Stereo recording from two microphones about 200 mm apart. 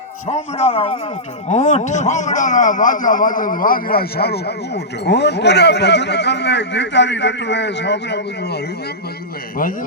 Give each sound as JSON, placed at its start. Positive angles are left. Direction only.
{"t": 0.3, "sound": "a man's voice", "side_deg": 30}